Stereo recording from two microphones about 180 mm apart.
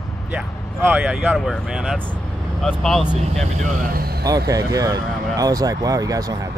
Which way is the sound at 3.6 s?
55° right (ahead or behind).